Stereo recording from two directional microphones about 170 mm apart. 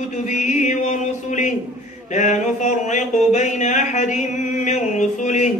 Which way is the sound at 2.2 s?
45° left (ahead or behind).